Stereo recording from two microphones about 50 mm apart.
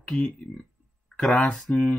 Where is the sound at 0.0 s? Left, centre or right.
Centre.